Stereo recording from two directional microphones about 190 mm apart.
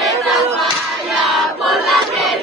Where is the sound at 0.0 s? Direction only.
Centre (ahead or behind).